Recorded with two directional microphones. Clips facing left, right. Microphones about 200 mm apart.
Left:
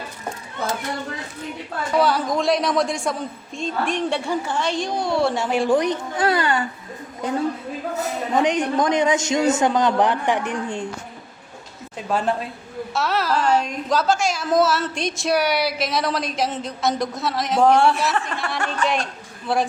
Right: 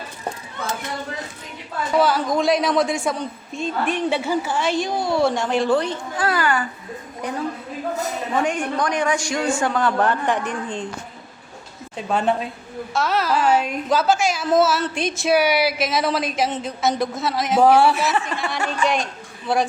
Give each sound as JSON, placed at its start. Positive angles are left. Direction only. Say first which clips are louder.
{"t": 2.0, "sound": "a woman's voice", "louder": "right 1 dB", "side_deg": 0}
{"t": 8.4, "sound": "a man's voice", "louder": "left 3 dB", "side_deg": 20}
{"t": 11.9, "sound": "a woman's voice", "louder": "right 2 dB", "side_deg": 0}